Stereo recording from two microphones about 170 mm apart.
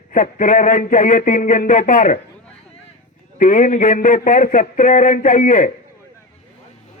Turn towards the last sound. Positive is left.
turn(degrees=45)  # may be behind; listen again after turning